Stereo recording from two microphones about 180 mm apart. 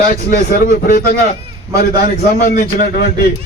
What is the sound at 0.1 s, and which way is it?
Speech, 50° left (ahead or behind).